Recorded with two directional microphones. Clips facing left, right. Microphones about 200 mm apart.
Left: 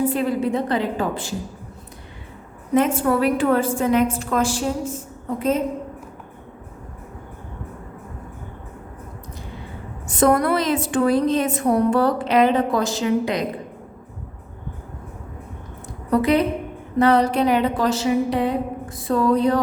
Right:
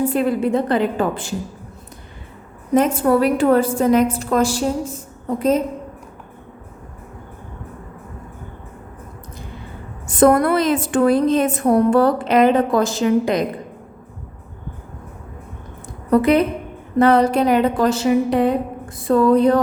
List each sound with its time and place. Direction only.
0.1 s a woman's voice: 50° right (ahead or behind)
2.7 s a woman's voice: 40° right (ahead or behind)
10.1 s a woman's voice: 50° right (ahead or behind)
16.0 s a woman's voice: 50° right (ahead or behind)